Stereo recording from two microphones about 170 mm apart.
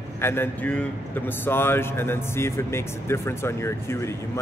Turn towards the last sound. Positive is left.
turn(degrees=15)  # may be behind; listen again after turning